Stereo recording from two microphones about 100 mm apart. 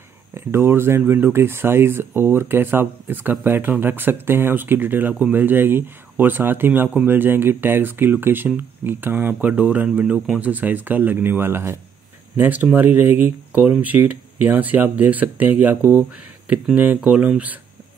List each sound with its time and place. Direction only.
0.3 s speech: 25° right (ahead or behind)
16.4 s speech: 15° right (ahead or behind)